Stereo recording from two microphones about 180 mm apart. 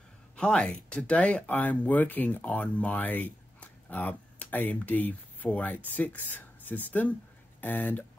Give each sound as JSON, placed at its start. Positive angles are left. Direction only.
{"t": 0.4, "sound": "speech", "side_deg": 5}